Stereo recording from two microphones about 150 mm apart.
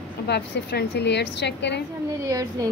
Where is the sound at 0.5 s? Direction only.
90° left.